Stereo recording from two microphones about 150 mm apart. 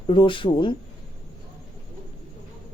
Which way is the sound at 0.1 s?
35° left (ahead or behind).